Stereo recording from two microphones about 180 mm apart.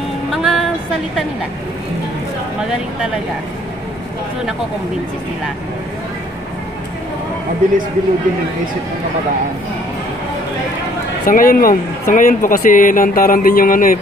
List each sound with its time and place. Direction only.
0.3 s music: centre (ahead or behind)
11.2 s a man's voice: 50° left (ahead or behind)